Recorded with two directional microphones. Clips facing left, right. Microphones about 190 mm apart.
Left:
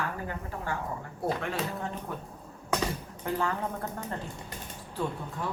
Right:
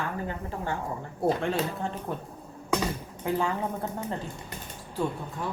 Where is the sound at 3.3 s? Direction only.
15° right (ahead or behind).